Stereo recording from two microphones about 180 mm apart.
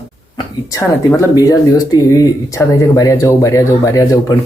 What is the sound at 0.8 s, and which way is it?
Speech, 15° left (ahead or behind).